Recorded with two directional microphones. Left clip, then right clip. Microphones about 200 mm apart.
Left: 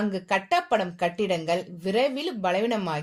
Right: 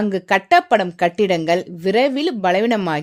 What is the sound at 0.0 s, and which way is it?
Speech, 55° right (ahead or behind).